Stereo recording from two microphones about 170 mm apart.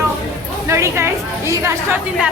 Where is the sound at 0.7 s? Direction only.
15° right (ahead or behind).